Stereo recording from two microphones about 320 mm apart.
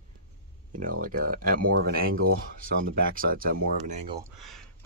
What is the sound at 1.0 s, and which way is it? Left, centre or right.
Speech, right.